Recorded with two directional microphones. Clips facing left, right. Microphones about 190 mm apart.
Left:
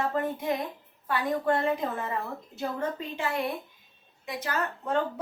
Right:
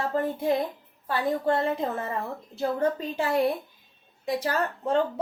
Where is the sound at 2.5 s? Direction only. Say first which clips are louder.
Right 6 dB; 35° right (ahead or behind).